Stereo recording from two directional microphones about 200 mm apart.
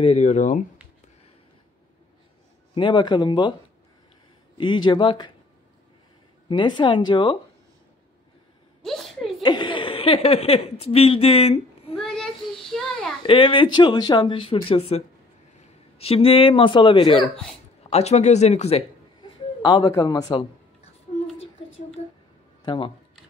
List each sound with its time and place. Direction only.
0.0 s speech: 35° left (ahead or behind)
2.7 s speech: 25° left (ahead or behind)
4.6 s speech: 25° left (ahead or behind)
6.5 s speech: 25° left (ahead or behind)
8.8 s a sound: centre (ahead or behind)
9.4 s speech: 20° left (ahead or behind)
12.0 s child singing: centre (ahead or behind)
12.7 s a sound: centre (ahead or behind)
13.2 s speech: 25° left (ahead or behind)
19.6 s speech: 20° left (ahead or behind)